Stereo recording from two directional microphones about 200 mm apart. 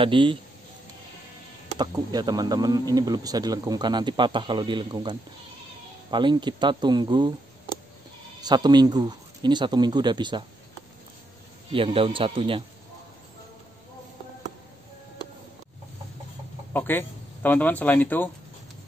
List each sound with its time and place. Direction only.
0.0 s a man's voice: 25° right (ahead or behind)
1.8 s a man's voice: 20° right (ahead or behind)
8.4 s a man's voice: 20° right (ahead or behind)
11.7 s a man's voice: 25° right (ahead or behind)
16.7 s speech: 10° left (ahead or behind)